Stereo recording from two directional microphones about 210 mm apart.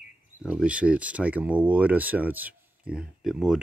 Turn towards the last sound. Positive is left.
turn(degrees=0)  # may be behind; listen again after turning